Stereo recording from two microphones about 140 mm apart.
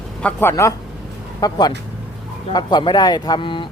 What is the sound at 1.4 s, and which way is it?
Speech, 30° left (ahead or behind).